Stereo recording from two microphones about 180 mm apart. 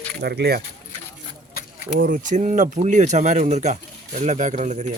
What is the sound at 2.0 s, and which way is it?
Speech, 45° right (ahead or behind).